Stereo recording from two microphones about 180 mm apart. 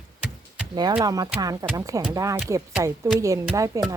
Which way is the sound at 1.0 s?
20° right (ahead or behind).